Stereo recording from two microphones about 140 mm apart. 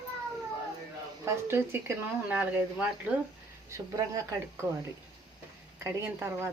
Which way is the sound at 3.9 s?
25° right (ahead or behind).